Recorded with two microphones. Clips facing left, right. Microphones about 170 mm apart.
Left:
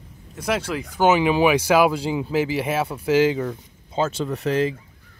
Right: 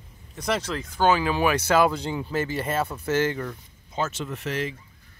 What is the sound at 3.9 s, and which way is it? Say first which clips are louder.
Speech: left 6 dB; 30° left (ahead or behind).